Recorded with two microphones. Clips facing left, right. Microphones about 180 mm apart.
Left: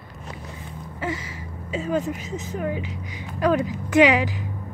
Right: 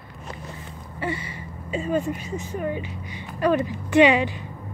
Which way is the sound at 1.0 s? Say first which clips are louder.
Even; 90° left.